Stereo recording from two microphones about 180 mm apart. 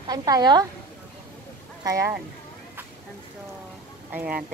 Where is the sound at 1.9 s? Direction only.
15° right (ahead or behind).